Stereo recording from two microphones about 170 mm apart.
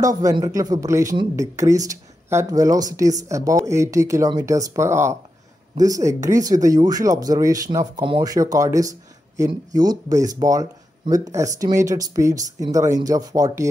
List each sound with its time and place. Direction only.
0.0 s speech: 20° right (ahead or behind)